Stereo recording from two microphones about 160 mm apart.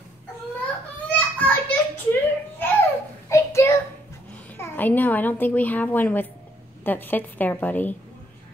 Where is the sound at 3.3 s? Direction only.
20° left (ahead or behind).